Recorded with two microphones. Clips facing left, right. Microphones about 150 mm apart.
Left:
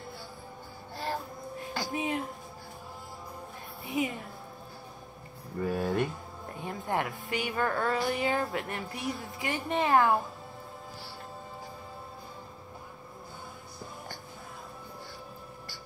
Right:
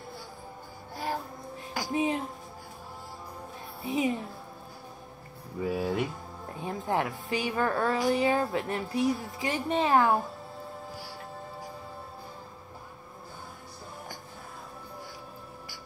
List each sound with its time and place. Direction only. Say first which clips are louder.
1.7 s a sound: right 4 dB; 15° right (ahead or behind)
3.8 s speech: right 3 dB; 20° right (ahead or behind)
5.6 s speech: even; 5° right (ahead or behind)
6.6 s speech: right 2 dB; 20° right (ahead or behind)